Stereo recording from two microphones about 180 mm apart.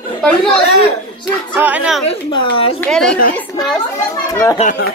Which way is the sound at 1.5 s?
10° right (ahead or behind).